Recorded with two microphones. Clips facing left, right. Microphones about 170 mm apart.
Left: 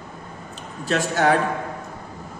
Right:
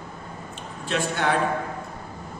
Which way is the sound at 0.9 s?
40° left (ahead or behind).